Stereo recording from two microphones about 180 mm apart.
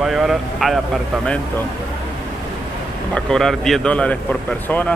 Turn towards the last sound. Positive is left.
turn(degrees=10)  # may be behind; listen again after turning